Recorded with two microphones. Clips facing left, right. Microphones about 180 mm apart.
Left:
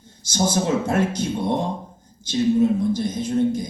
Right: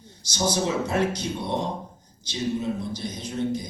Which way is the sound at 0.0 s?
50° left (ahead or behind).